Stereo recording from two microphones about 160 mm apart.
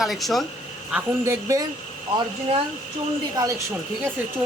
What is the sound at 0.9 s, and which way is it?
Speech, 15° right (ahead or behind).